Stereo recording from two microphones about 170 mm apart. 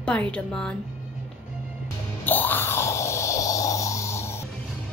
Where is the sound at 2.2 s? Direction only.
10° left (ahead or behind).